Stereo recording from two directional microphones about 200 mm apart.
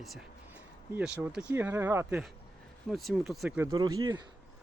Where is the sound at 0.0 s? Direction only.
Centre (ahead or behind).